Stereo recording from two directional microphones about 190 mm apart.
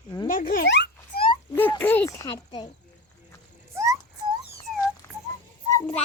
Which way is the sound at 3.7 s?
15° right (ahead or behind).